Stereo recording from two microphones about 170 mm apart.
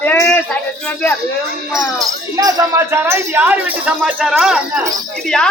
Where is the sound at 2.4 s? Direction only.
20° right (ahead or behind).